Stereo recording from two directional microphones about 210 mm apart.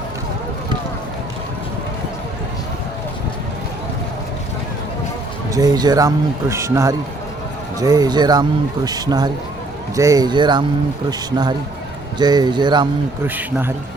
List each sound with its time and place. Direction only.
5.5 s a man's voice: 15° right (ahead or behind)
13.2 s speech: 10° right (ahead or behind)